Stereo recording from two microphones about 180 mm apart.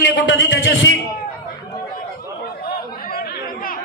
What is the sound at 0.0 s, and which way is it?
Speech, 90° left.